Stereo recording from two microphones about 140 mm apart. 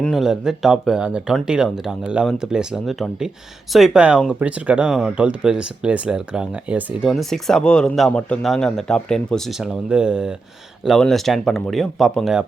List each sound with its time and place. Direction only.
0.0 s speech: centre (ahead or behind)